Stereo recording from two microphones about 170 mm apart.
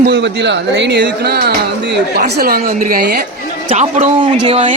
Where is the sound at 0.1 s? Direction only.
90° right; by 3.2 s 65° right (ahead or behind).